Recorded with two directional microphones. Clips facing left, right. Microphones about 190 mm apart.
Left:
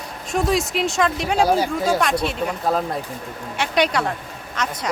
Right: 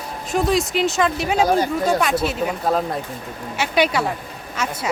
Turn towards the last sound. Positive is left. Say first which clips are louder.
# right 1 dB
turn(degrees=-10)  # may be behind; listen again after turning